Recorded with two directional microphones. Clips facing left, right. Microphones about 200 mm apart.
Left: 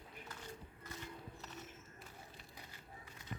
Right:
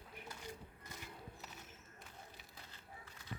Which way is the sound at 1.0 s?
5° right (ahead or behind).